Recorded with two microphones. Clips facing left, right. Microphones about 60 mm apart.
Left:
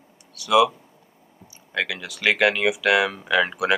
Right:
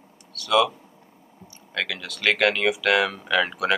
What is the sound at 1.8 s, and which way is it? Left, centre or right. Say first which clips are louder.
Speech: left 2 dB; centre.